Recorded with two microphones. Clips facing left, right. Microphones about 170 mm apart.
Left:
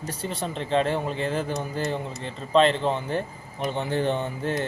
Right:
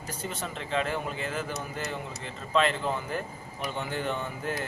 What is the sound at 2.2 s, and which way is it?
Mantra, 30° left (ahead or behind).